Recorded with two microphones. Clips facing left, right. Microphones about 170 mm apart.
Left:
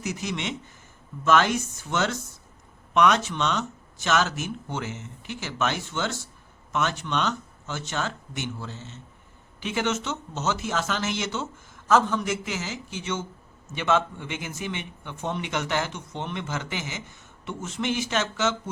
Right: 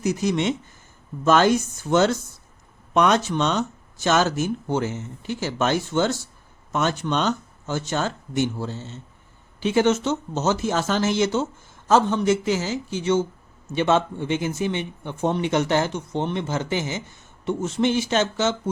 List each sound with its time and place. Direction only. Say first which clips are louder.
0.0 s speech: right 9 dB; 40° right (ahead or behind)